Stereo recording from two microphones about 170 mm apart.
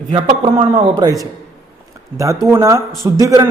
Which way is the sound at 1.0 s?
25° right (ahead or behind).